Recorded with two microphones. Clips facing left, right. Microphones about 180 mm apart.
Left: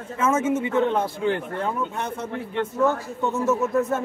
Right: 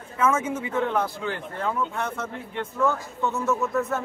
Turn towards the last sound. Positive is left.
turn(degrees=25)  # may be behind; listen again after turning